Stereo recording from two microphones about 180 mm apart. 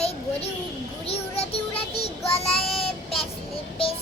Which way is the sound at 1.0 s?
35° left (ahead or behind).